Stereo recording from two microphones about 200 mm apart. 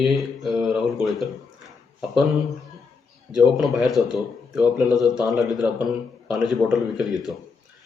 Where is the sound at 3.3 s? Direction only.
Centre (ahead or behind).